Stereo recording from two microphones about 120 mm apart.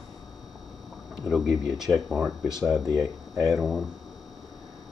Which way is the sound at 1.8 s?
Centre (ahead or behind).